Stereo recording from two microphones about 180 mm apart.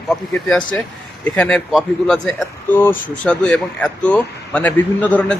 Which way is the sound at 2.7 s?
10° left (ahead or behind).